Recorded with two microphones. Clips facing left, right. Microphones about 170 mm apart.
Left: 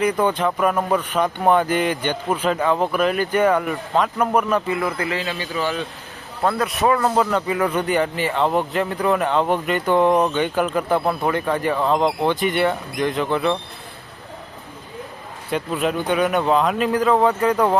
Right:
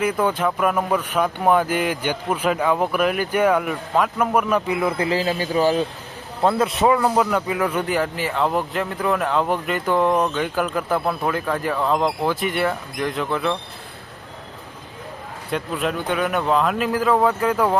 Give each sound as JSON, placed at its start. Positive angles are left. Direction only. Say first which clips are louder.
{"t": 0.0, "sound": "a man's voice", "louder": "left 1 dB", "side_deg": -5}
{"t": 4.9, "sound": "a man's voice", "louder": "right 4 dB", "side_deg": -30}
{"t": 6.6, "sound": "a man's voice", "louder": "right 1 dB", "side_deg": -25}
{"t": 6.9, "sound": "speech", "louder": "even", "side_deg": -5}
{"t": 15.4, "sound": "speech", "louder": "left 2 dB", "side_deg": 0}